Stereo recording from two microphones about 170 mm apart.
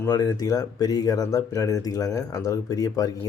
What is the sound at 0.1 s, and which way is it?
Speech, 20° left (ahead or behind).